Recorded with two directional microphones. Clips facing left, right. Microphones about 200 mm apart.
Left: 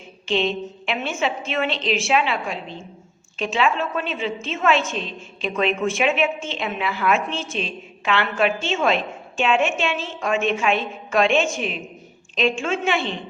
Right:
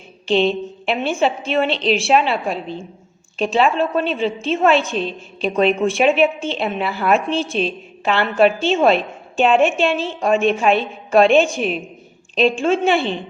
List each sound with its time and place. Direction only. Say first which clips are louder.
0.3 s a woman's voice: right 5 dB; 35° right (ahead or behind)